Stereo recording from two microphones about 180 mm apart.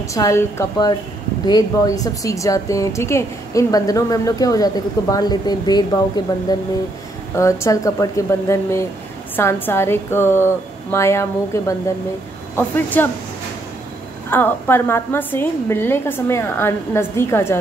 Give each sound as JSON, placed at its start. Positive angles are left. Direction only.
{"t": 0.1, "sound": "a woman's voice", "side_deg": 15}
{"t": 14.3, "sound": "a woman's voice", "side_deg": 10}